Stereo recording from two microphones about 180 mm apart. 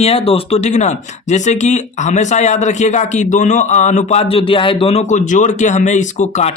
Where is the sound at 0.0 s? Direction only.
35° left (ahead or behind).